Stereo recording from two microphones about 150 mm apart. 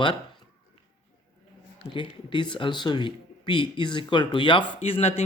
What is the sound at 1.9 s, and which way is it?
Speech, 30° left (ahead or behind).